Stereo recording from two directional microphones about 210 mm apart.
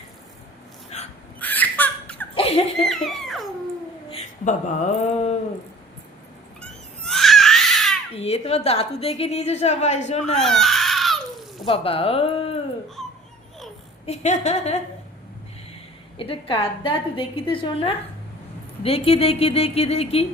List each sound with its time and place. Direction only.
0.9 s a sound: 30° left (ahead or behind)
1.4 s laughter: 10° left (ahead or behind)
2.3 s a sound: 25° left (ahead or behind)
2.9 s a sound: centre (ahead or behind)
4.1 s speech: 35° left (ahead or behind)
6.6 s baby cry: centre (ahead or behind)
8.1 s a woman's voice: 30° left (ahead or behind)
10.3 s crying: centre (ahead or behind)
11.6 s a woman's voice: 25° left (ahead or behind)
13.0 s a sound: centre (ahead or behind)
14.0 s a woman's voice: 30° left (ahead or behind)
16.1 s a woman's voice: 25° left (ahead or behind)